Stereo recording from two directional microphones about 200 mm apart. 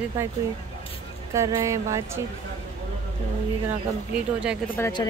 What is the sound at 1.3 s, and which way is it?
Speech, 15° right (ahead or behind).